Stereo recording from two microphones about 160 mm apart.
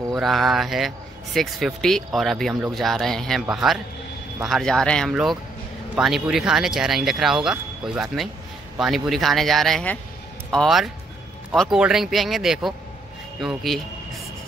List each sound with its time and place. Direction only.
0.1 s speech: centre (ahead or behind)